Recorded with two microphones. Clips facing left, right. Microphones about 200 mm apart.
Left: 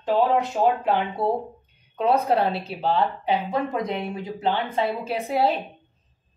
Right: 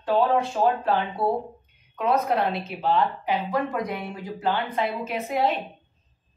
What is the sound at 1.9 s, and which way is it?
A woman's voice, 30° left (ahead or behind).